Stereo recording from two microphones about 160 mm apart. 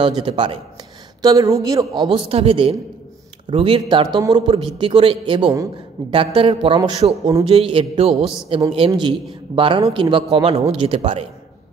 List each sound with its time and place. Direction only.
0.2 s a man's voice: 35° right (ahead or behind)
1.2 s a man's voice: 20° right (ahead or behind)
2.0 s a man's voice: 35° right (ahead or behind)